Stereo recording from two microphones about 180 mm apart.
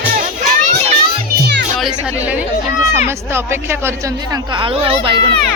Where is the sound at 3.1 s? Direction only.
15° right (ahead or behind).